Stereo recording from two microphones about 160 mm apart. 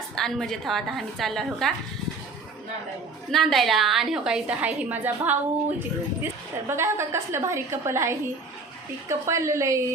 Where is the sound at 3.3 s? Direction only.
Centre (ahead or behind).